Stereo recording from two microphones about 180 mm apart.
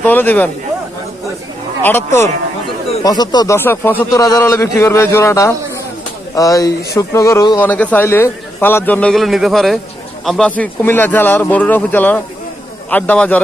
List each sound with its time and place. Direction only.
0.0 s a man's voice: 10° left (ahead or behind)
1.8 s a man's voice: 10° left (ahead or behind)